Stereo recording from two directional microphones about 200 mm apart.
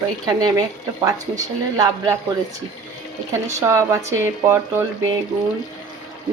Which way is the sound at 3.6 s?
15° right (ahead or behind).